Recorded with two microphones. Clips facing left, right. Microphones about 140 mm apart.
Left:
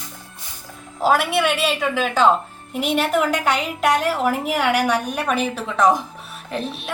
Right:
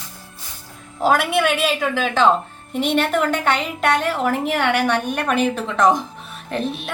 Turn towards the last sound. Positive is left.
turn(degrees=0)  # may be behind; listen again after turning